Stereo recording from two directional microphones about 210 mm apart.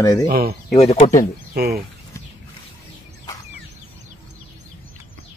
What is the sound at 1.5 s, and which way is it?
Speech, 45° right (ahead or behind).